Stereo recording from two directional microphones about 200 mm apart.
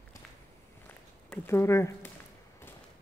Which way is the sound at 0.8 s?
10° left (ahead or behind).